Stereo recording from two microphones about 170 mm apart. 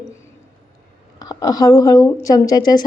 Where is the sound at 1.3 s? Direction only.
20° left (ahead or behind).